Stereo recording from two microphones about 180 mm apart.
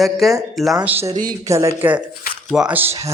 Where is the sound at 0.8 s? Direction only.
10° right (ahead or behind).